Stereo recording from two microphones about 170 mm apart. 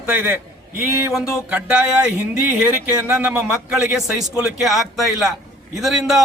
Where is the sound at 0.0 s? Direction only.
10° right (ahead or behind).